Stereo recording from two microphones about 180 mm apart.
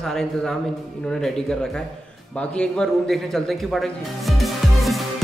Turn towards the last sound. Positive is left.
turn(degrees=0)  # may be behind; listen again after turning